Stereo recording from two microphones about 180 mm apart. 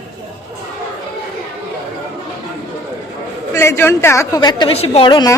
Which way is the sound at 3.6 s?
15° left (ahead or behind).